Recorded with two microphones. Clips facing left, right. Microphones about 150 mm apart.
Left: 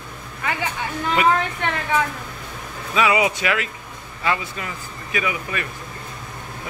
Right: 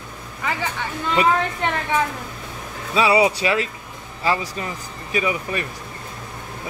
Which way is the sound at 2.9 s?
30° right (ahead or behind).